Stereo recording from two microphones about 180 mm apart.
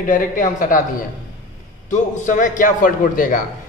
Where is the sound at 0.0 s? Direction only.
45° left (ahead or behind).